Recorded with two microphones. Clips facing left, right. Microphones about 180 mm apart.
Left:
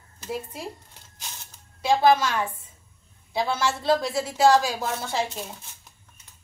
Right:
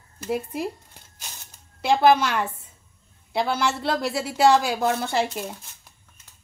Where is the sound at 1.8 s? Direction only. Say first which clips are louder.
Right 1 dB; 65° right (ahead or behind).